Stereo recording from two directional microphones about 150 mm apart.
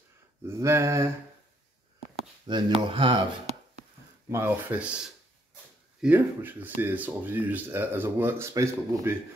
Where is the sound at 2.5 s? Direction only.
30° right (ahead or behind).